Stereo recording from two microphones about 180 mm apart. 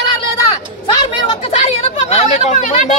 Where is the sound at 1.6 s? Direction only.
40° left (ahead or behind).